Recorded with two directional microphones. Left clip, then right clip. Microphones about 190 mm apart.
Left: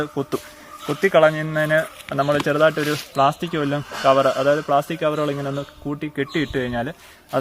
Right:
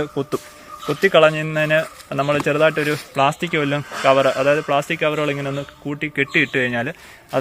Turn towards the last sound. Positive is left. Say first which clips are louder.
# right 4 dB
turn(degrees=-25)  # may be behind; listen again after turning